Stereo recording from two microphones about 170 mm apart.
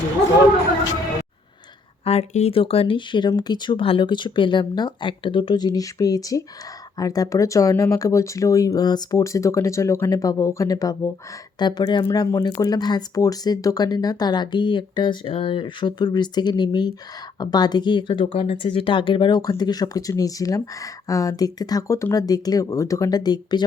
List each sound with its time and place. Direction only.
2.0 s speech: 40° left (ahead or behind)